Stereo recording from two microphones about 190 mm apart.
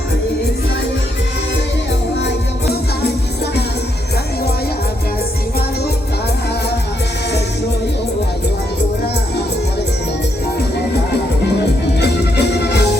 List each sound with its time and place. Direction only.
11.9 s music: 60° left (ahead or behind)